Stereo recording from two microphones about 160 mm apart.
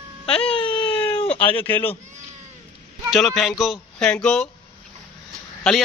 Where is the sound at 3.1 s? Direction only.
Centre (ahead or behind).